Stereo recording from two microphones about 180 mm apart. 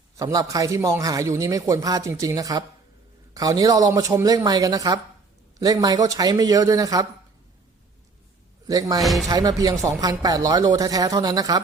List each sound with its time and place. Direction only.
0.2 s a man's voice: 20° right (ahead or behind)
8.6 s a man's voice: 20° right (ahead or behind)
9.0 s speech: centre (ahead or behind)
9.3 s a man's voice: 20° right (ahead or behind)